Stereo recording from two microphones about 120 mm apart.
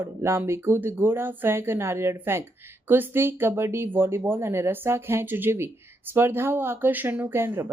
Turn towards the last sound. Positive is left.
turn(degrees=-20)  # may be behind; listen again after turning